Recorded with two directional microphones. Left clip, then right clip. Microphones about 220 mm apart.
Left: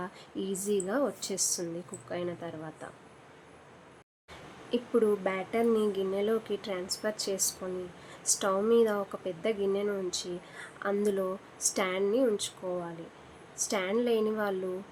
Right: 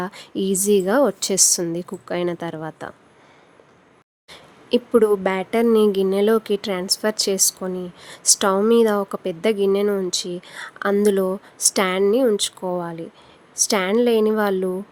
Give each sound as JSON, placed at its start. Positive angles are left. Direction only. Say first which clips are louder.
{"t": 0.0, "sound": "speech", "louder": "right 12 dB", "side_deg": -50}
{"t": 4.7, "sound": "speech", "louder": "right 11 dB", "side_deg": -50}